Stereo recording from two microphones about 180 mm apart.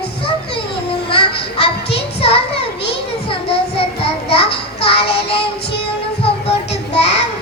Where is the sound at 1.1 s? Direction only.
30° left (ahead or behind).